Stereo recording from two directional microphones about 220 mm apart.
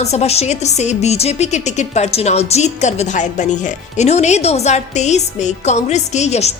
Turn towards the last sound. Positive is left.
turn(degrees=30)  # may be behind; listen again after turning